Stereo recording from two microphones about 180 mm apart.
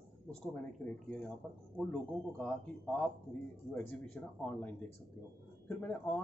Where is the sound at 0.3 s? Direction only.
5° left (ahead or behind).